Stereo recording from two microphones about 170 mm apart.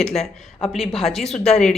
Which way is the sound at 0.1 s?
40° left (ahead or behind).